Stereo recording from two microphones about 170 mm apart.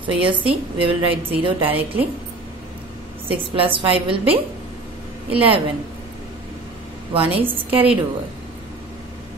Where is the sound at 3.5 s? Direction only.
30° right (ahead or behind).